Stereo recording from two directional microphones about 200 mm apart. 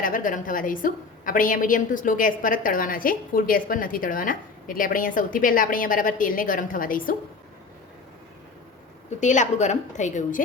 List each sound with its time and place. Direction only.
0.0 s a woman's voice: 40° left (ahead or behind)
9.0 s a woman's voice: 35° left (ahead or behind)